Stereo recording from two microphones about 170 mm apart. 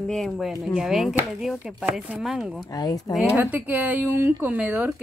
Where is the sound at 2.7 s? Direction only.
20° left (ahead or behind).